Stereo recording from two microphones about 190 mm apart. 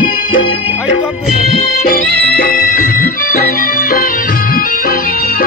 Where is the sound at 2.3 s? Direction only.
50° left (ahead or behind).